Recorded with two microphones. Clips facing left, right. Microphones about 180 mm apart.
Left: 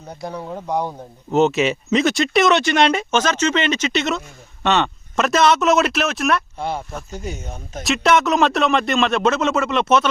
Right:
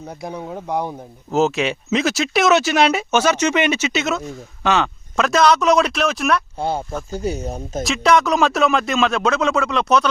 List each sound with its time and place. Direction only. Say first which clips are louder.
0.3 s speech: left 1 dB; 15° right (ahead or behind)
1.3 s speech: left 2 dB; centre (ahead or behind)
6.6 s speech: right 3 dB; 30° right (ahead or behind)
7.9 s speech: even; centre (ahead or behind)